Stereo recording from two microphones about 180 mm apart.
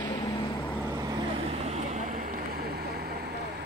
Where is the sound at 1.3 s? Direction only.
35° right (ahead or behind).